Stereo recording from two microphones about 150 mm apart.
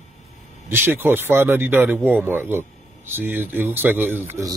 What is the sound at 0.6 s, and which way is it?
Speech, 15° right (ahead or behind).